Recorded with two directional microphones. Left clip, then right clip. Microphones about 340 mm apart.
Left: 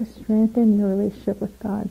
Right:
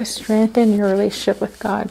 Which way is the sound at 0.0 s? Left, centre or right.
Centre.